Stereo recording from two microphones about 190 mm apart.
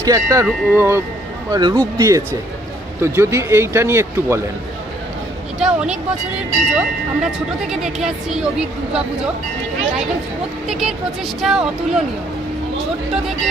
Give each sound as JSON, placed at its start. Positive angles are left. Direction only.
{"t": 0.0, "sound": "speech", "side_deg": -15}
{"t": 5.6, "sound": "speech", "side_deg": -5}
{"t": 10.7, "sound": "speech", "side_deg": 0}